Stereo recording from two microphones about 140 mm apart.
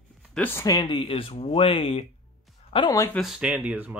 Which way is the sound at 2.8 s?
20° left (ahead or behind).